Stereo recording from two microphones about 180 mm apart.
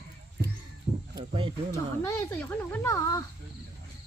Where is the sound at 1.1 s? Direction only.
25° right (ahead or behind).